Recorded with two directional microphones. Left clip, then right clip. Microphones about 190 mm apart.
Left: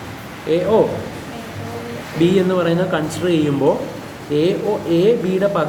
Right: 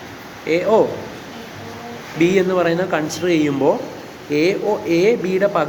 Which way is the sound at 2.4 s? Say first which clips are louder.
Even; 30° right (ahead or behind).